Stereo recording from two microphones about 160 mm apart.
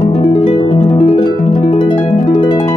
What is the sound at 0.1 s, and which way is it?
Harp, 35° left (ahead or behind).